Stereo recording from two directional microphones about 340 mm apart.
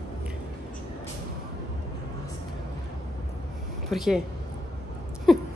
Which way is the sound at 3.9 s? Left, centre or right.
Centre.